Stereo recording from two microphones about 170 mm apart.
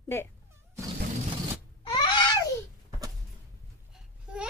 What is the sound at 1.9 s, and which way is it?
Baby cry, 30° left (ahead or behind).